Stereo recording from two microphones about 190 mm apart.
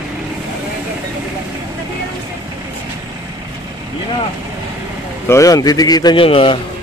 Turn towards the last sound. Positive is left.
turn(degrees=30)  # may be behind; listen again after turning